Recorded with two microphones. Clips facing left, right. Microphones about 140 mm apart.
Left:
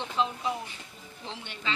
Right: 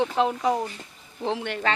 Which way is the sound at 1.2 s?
60° right (ahead or behind).